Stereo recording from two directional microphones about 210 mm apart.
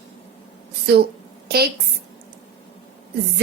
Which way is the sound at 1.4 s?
45° right (ahead or behind).